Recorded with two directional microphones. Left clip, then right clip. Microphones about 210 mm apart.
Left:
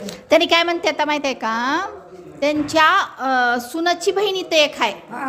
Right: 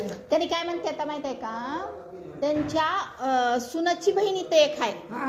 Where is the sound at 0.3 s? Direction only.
35° left (ahead or behind).